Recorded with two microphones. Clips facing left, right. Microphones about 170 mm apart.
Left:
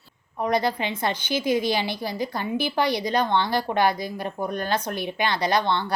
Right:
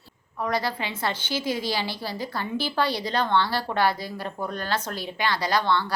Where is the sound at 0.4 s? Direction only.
20° left (ahead or behind).